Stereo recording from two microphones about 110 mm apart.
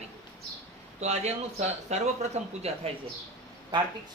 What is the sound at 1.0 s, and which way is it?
Speech, 85° right.